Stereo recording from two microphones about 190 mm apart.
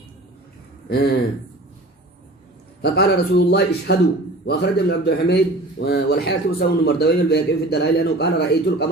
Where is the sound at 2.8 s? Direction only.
60° left (ahead or behind).